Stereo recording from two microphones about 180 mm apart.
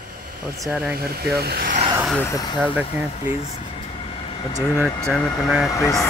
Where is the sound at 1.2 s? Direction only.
60° right (ahead or behind).